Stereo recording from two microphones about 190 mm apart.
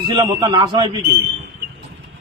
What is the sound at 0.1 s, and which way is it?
Speech, 25° right (ahead or behind).